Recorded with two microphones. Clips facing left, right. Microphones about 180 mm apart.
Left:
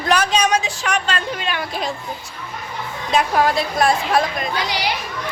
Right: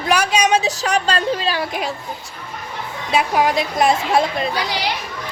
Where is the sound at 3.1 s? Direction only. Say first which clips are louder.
Even; 10° right (ahead or behind).